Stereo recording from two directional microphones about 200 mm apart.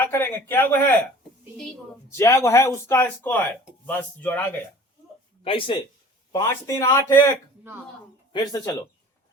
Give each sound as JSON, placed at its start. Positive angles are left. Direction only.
{"t": 0.1, "sound": "a man's voice", "side_deg": 10}
{"t": 2.0, "sound": "a man's voice", "side_deg": 15}
{"t": 5.4, "sound": "speech", "side_deg": 25}
{"t": 6.3, "sound": "a man's voice", "side_deg": 15}
{"t": 8.3, "sound": "speech", "side_deg": 20}